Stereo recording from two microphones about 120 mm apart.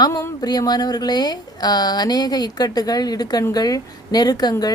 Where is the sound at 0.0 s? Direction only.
30° left (ahead or behind).